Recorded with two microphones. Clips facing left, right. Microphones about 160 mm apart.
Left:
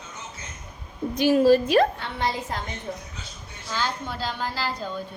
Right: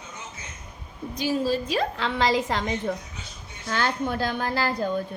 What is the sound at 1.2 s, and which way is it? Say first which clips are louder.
Speech: left 7 dB; 65° left (ahead or behind).